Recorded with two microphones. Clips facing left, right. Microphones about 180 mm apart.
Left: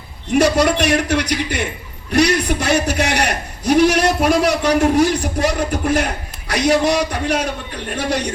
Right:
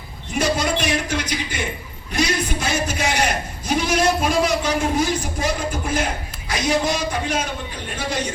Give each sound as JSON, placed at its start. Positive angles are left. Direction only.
{"t": 0.3, "sound": "a man's voice", "side_deg": 70}